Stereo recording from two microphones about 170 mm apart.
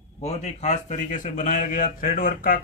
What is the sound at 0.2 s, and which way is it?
A man's voice, 40° left (ahead or behind).